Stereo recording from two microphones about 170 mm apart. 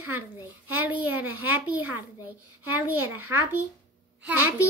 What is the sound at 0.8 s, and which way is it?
A child's voice, 10° right (ahead or behind).